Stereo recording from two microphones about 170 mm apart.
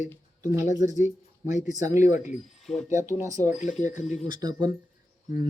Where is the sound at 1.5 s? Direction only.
45° left (ahead or behind).